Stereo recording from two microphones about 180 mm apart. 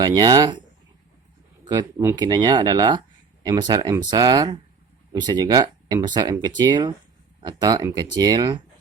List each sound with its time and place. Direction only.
0.0 s speech: 20° right (ahead or behind)
1.6 s speech: 25° right (ahead or behind)